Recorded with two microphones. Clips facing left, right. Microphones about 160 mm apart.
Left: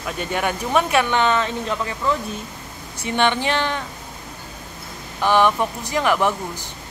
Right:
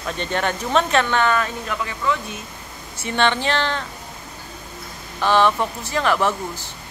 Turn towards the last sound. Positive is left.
turn(degrees=15)  # may be behind; listen again after turning